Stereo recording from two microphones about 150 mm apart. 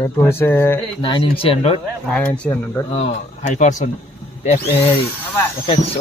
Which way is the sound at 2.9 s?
45° left (ahead or behind).